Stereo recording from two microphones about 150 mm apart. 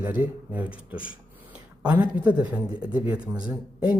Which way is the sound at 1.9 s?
10° right (ahead or behind).